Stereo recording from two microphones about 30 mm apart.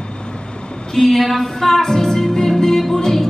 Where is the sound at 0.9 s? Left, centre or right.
Centre.